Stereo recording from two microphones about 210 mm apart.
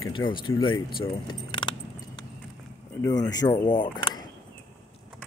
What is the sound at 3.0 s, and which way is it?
Speech, 20° left (ahead or behind).